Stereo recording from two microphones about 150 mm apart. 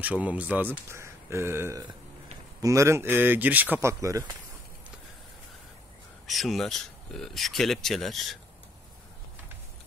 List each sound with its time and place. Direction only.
0.0 s speech: 10° right (ahead or behind)
6.2 s speech: centre (ahead or behind)